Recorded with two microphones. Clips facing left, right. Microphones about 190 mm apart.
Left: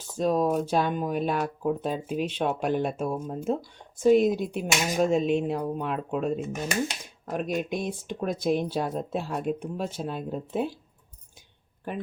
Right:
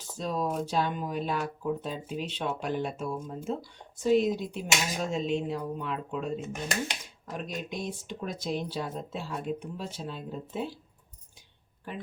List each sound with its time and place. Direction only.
0.2 s speech: 50° left (ahead or behind)